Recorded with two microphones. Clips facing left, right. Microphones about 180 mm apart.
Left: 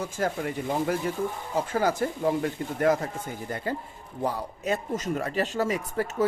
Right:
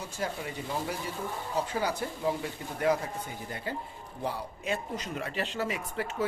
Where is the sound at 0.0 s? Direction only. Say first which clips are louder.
Left 7 dB; 50° left (ahead or behind).